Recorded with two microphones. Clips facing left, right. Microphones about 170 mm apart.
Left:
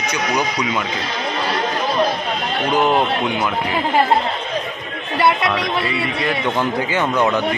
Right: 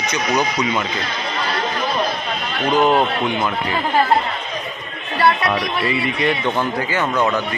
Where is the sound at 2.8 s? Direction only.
10° left (ahead or behind).